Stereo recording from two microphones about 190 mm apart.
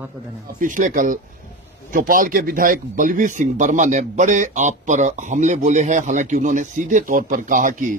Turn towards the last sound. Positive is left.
turn(degrees=-45)  # may be behind; listen again after turning